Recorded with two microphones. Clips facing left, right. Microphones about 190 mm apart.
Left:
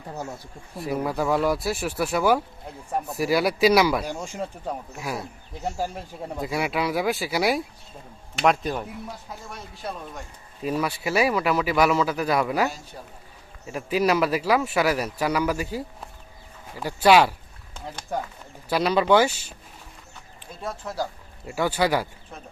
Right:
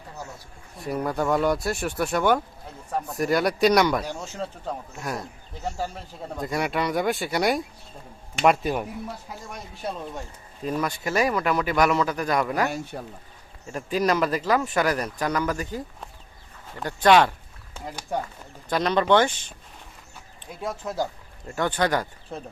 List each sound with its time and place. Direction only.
0.8 s speech: 5° left (ahead or behind)
8.4 s speech: 5° right (ahead or behind)
10.6 s speech: 10° left (ahead or behind)
12.9 s speech: 65° right (ahead or behind)
13.7 s speech: 5° left (ahead or behind)
17.7 s speech: 10° right (ahead or behind)
18.7 s speech: 10° left (ahead or behind)
20.6 s speech: 15° right (ahead or behind)
21.4 s speech: 10° left (ahead or behind)
22.3 s speech: 30° right (ahead or behind)